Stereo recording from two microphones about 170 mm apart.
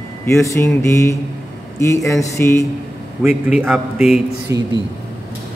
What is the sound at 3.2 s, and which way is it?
A man's voice, 5° right (ahead or behind).